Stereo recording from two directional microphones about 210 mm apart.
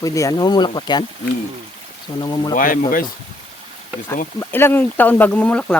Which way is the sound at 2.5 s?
40° left (ahead or behind).